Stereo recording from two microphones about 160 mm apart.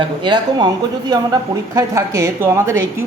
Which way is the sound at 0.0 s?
25° right (ahead or behind).